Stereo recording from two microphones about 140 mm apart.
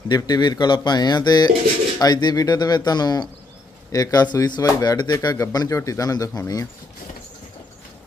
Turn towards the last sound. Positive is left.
turn(degrees=25)  # may be behind; listen again after turning